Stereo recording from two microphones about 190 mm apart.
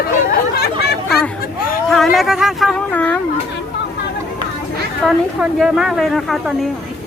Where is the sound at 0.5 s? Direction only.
55° left (ahead or behind).